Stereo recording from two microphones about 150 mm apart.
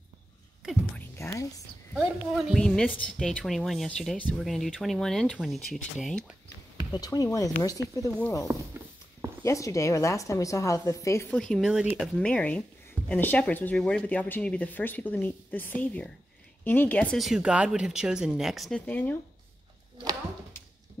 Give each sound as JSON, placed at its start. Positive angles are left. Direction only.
{"t": 0.9, "sound": "whispering", "side_deg": 20}
{"t": 2.0, "sound": "a woman's voice", "side_deg": -5}
{"t": 6.9, "sound": "a woman's voice", "side_deg": 25}
{"t": 9.4, "sound": "a woman's voice", "side_deg": 20}
{"t": 11.3, "sound": "a woman's voice", "side_deg": 5}
{"t": 12.2, "sound": "speech", "side_deg": 5}
{"t": 17.3, "sound": "a woman's voice", "side_deg": -5}
{"t": 18.9, "sound": "speech", "side_deg": 10}